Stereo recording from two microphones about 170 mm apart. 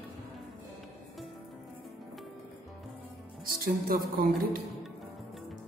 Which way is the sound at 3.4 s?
60° right (ahead or behind).